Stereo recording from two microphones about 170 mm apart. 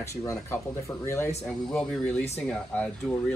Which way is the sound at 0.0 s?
20° left (ahead or behind).